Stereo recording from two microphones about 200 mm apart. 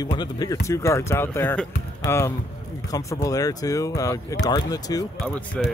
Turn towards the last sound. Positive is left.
turn(degrees=5)  # may be behind; listen again after turning